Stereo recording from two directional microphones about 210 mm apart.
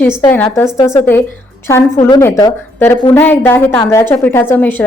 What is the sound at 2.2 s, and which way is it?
Speech, 15° left (ahead or behind).